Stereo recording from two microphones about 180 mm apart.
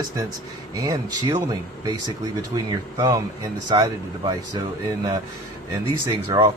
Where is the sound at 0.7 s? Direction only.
20° right (ahead or behind).